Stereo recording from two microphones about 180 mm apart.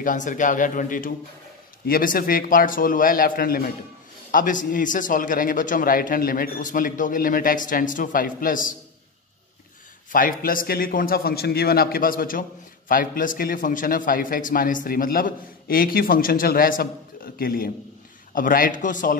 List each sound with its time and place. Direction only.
0.0 s a man's voice: 45° left (ahead or behind)
10.1 s a man's voice: 50° left (ahead or behind)